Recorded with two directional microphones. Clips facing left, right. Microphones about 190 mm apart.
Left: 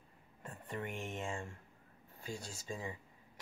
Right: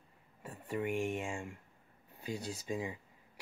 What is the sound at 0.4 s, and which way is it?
Speech, 5° right (ahead or behind).